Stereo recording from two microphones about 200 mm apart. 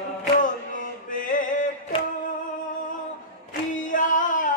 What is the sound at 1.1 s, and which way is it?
Chant, 40° left (ahead or behind).